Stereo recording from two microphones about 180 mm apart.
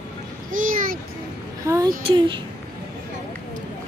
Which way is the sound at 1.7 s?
20° right (ahead or behind).